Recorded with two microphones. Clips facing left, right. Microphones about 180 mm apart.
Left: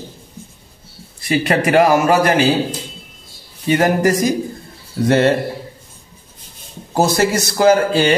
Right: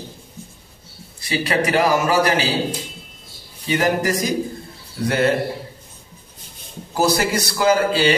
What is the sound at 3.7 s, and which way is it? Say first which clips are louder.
Speech: left 5 dB; 50° left (ahead or behind).